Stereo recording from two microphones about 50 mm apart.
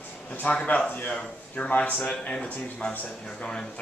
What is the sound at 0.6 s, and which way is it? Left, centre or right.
A man's voice, left.